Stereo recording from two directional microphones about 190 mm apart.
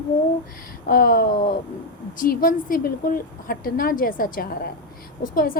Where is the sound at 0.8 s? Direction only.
50° left (ahead or behind).